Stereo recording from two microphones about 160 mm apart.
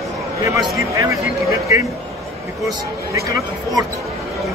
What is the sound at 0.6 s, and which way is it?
Speech, 20° right (ahead or behind).